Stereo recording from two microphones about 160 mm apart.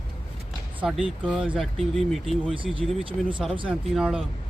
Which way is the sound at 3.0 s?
35° right (ahead or behind).